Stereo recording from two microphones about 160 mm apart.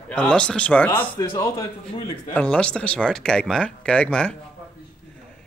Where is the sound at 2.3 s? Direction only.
5° left (ahead or behind).